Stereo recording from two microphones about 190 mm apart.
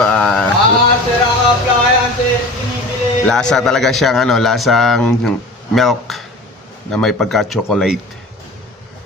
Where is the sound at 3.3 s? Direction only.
5° left (ahead or behind).